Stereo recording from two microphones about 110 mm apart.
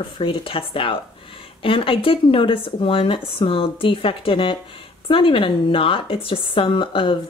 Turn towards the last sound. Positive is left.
turn(degrees=50)  # may be behind; listen again after turning